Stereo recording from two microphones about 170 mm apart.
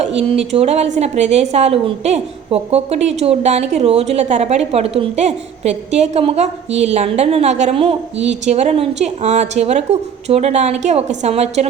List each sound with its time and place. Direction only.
0.0 s a woman's voice: 35° right (ahead or behind)